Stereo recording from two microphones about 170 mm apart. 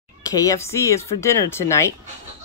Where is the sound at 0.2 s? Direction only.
20° left (ahead or behind).